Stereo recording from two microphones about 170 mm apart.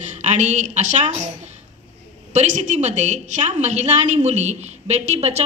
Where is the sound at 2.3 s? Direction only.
45° right (ahead or behind).